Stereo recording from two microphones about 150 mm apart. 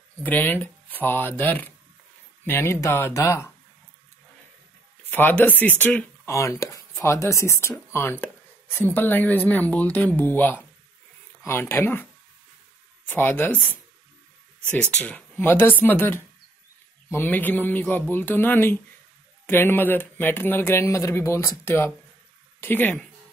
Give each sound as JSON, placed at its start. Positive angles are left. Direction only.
{"t": 0.2, "sound": "speech", "side_deg": 10}
{"t": 5.1, "sound": "speech", "side_deg": 10}
{"t": 6.3, "sound": "speech", "side_deg": 20}
{"t": 7.9, "sound": "a sound", "side_deg": 15}
{"t": 8.9, "sound": "speech", "side_deg": 10}
{"t": 13.1, "sound": "speech", "side_deg": 15}
{"t": 14.8, "sound": "speech", "side_deg": 10}